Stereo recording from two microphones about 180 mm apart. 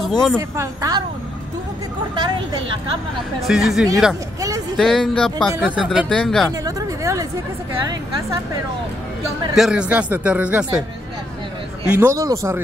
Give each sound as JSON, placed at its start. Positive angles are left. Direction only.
{"t": 0.0, "sound": "a woman's voice", "side_deg": 5}
{"t": 0.4, "sound": "speech", "side_deg": -20}
{"t": 3.3, "sound": "speech", "side_deg": 0}
{"t": 6.6, "sound": "speech", "side_deg": -20}
{"t": 9.6, "sound": "speech", "side_deg": -5}
{"t": 11.9, "sound": "speech", "side_deg": -15}